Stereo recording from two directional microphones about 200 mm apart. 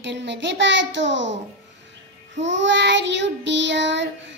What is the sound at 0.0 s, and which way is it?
A child's voice, 60° right (ahead or behind).